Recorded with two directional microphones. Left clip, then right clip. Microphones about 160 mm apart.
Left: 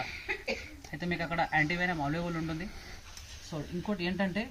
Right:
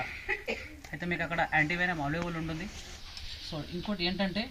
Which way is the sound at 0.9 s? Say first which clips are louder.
Right 1 dB; centre (ahead or behind).